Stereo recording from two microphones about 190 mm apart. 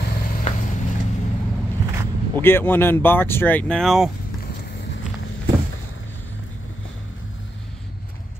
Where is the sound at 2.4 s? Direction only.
10° left (ahead or behind).